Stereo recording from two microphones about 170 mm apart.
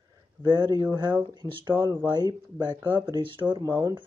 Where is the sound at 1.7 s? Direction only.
15° right (ahead or behind).